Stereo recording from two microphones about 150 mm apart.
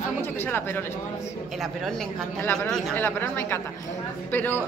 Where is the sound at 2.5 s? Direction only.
10° left (ahead or behind).